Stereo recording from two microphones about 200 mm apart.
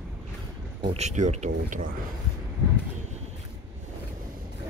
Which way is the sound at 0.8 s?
35° right (ahead or behind).